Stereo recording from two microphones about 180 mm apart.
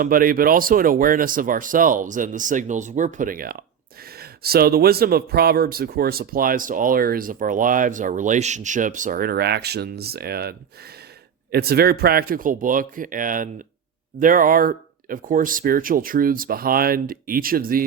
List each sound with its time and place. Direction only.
0.0 s speech: 50° right (ahead or behind)
11.5 s speech: 60° right (ahead or behind)